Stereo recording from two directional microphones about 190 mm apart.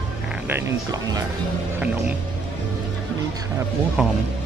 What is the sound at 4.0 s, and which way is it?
Speech, 5° right (ahead or behind).